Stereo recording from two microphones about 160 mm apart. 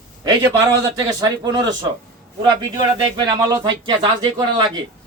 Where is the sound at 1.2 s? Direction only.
25° right (ahead or behind).